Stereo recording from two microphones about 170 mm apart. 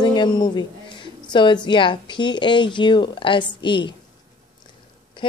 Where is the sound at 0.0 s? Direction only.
25° left (ahead or behind).